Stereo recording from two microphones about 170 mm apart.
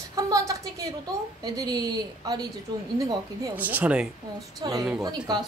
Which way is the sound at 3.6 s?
10° right (ahead or behind).